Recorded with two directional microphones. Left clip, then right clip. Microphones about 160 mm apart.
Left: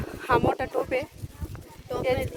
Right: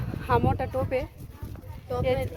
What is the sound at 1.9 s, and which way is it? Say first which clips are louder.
Speech: even; 75° right (ahead or behind).